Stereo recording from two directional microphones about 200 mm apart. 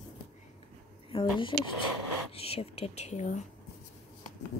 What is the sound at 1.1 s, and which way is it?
Speech, 25° left (ahead or behind).